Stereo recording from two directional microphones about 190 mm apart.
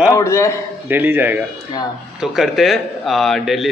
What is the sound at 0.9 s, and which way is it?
A man's voice, 10° right (ahead or behind).